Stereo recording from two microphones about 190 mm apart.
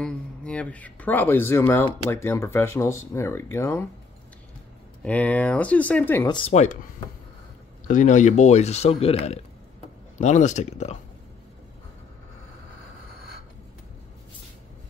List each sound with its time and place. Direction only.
0.0 s speech: 5° left (ahead or behind)
5.0 s speech: 5° left (ahead or behind)
6.2 s speech: 25° left (ahead or behind)
6.5 s speech: 40° left (ahead or behind)
7.9 s speech: 40° left (ahead or behind)